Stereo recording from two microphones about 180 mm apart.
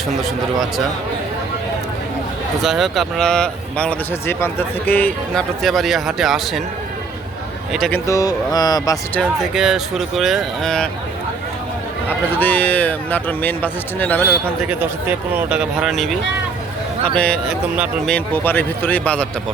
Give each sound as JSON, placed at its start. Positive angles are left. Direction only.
{"t": 2.6, "sound": "speech", "side_deg": 0}
{"t": 7.7, "sound": "speech", "side_deg": 0}
{"t": 7.9, "sound": "speech", "side_deg": 20}
{"t": 9.1, "sound": "speech", "side_deg": 0}
{"t": 12.0, "sound": "a man's voice", "side_deg": 10}
{"t": 15.4, "sound": "speech", "side_deg": -5}
{"t": 17.2, "sound": "a man's voice", "side_deg": 5}